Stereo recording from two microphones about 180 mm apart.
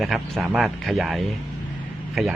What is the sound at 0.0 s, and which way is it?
A man's voice, centre (ahead or behind).